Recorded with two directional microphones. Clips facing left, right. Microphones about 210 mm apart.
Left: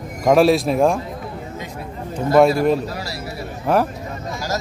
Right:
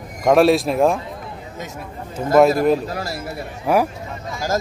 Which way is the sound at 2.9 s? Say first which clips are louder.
Right 2 dB; 50° right (ahead or behind).